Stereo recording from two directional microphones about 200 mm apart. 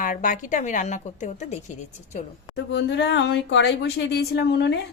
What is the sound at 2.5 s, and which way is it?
Speech, 60° left (ahead or behind).